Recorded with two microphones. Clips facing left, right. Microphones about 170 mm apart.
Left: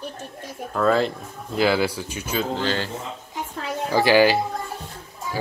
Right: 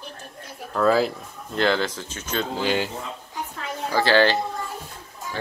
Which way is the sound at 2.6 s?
15° right (ahead or behind).